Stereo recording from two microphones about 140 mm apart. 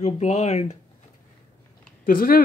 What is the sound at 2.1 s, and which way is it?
Speech, 90° left.